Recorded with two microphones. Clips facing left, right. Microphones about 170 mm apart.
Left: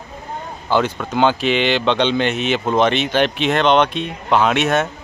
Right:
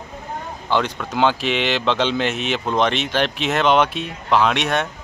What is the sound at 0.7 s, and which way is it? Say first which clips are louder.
A man's voice: left 3 dB; 5° left (ahead or behind).